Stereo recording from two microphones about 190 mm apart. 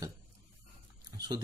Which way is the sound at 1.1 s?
20° right (ahead or behind).